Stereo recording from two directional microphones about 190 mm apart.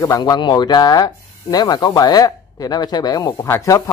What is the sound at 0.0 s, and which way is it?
Speech, 20° left (ahead or behind).